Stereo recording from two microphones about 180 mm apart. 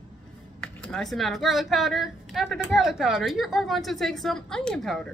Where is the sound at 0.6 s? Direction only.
5° left (ahead or behind).